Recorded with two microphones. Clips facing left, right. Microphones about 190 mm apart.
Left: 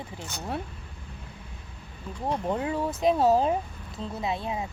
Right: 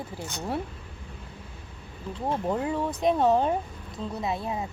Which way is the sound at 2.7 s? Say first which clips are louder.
Left 2 dB; centre (ahead or behind).